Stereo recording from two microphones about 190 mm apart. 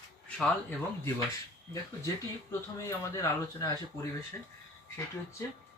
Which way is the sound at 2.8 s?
15° left (ahead or behind).